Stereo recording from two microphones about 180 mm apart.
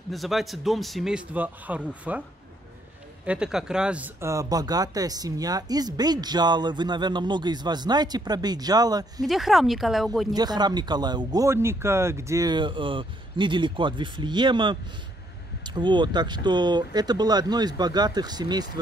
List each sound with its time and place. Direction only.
0.1 s speech: centre (ahead or behind)
3.3 s speech: 5° right (ahead or behind); by 9.3 s 20° right (ahead or behind)
9.3 s speech: centre (ahead or behind)
10.3 s speech: 20° right (ahead or behind)